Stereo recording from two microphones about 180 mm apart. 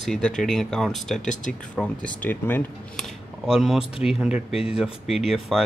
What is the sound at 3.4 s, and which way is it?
Speech, centre (ahead or behind).